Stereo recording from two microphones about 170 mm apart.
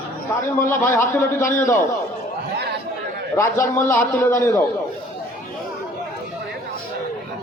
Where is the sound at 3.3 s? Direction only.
15° left (ahead or behind).